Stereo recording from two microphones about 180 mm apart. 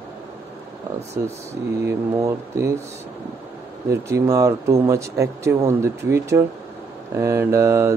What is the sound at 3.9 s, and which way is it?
Speech, 15° right (ahead or behind).